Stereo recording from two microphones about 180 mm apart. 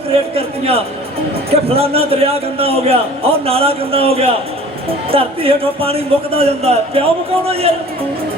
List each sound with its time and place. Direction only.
0.1 s a man's voice: 35° right (ahead or behind)